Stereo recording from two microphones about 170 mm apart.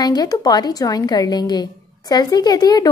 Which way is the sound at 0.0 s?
25° left (ahead or behind).